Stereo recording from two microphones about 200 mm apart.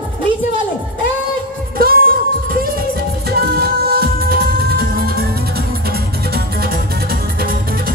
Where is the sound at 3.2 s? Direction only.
50° right (ahead or behind).